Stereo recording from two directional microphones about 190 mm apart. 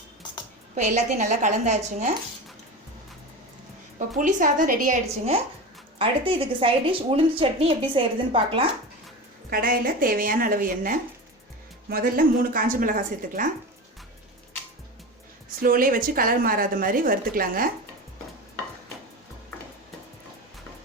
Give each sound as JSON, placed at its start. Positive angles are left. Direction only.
{"t": 0.8, "sound": "a woman's voice", "side_deg": -40}
{"t": 3.9, "sound": "a woman's voice", "side_deg": -45}
{"t": 9.5, "sound": "a woman's voice", "side_deg": -50}
{"t": 15.6, "sound": "a woman's voice", "side_deg": -50}